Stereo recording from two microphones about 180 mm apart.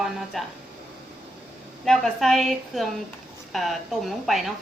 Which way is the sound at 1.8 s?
Centre (ahead or behind).